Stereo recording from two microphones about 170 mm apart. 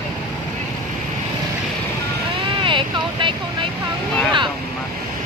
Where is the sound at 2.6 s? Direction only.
30° right (ahead or behind).